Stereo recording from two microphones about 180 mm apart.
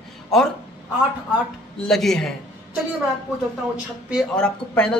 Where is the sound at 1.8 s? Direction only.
Centre (ahead or behind).